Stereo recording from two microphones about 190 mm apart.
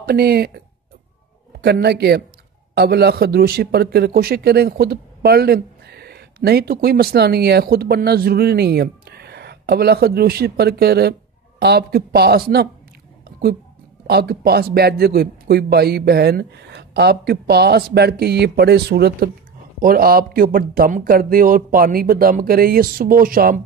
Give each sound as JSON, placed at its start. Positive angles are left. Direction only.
{"t": 0.0, "sound": "a man's voice", "side_deg": -55}
{"t": 1.6, "sound": "a man's voice", "side_deg": -60}
{"t": 14.0, "sound": "a man's voice", "side_deg": -55}